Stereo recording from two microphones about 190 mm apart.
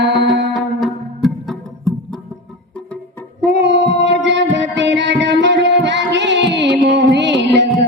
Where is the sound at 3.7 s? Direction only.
70° right (ahead or behind).